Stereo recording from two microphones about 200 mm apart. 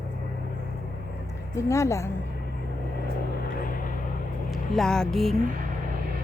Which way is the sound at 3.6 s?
45° left (ahead or behind).